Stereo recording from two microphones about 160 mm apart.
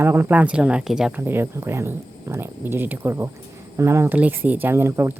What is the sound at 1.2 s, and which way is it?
Speech, 15° right (ahead or behind).